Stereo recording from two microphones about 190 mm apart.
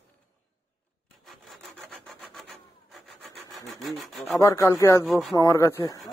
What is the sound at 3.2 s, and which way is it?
Rub, centre (ahead or behind).